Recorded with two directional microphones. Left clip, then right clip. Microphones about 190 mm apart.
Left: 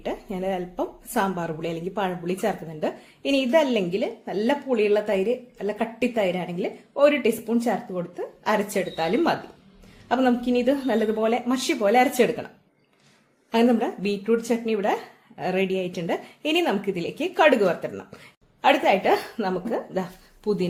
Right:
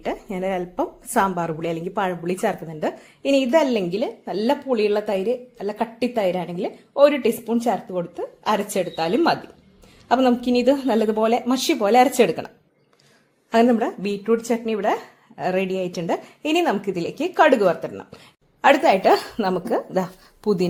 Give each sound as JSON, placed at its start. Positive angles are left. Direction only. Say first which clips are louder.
{"t": 0.0, "sound": "a woman's voice", "louder": "right 3 dB", "side_deg": -25}
{"t": 13.5, "sound": "a woman's voice", "louder": "right 4 dB", "side_deg": -25}